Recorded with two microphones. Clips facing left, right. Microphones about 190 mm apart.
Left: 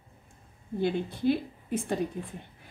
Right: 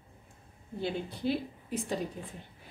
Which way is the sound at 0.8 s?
55° left (ahead or behind).